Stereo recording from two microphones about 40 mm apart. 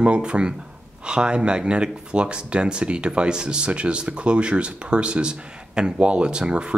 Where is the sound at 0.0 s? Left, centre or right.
Right.